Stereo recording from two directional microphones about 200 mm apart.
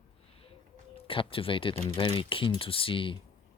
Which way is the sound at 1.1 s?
25° left (ahead or behind).